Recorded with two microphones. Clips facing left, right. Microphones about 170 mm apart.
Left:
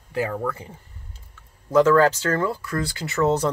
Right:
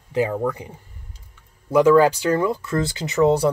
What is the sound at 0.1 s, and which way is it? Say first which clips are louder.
Speech: right 4 dB; 15° right (ahead or behind).